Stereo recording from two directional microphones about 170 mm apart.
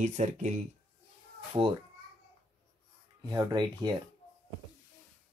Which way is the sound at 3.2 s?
25° right (ahead or behind).